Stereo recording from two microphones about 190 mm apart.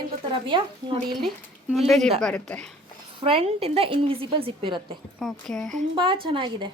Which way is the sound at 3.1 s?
30° right (ahead or behind).